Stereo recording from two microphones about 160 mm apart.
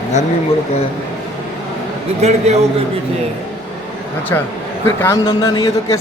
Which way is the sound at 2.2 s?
45° right (ahead or behind).